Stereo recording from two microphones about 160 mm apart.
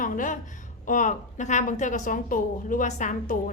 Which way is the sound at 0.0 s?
55° left (ahead or behind).